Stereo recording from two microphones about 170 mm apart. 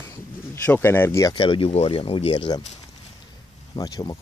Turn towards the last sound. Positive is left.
turn(degrees=20)  # may be behind; listen again after turning